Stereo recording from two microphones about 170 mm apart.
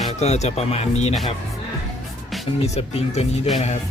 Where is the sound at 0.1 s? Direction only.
40° left (ahead or behind).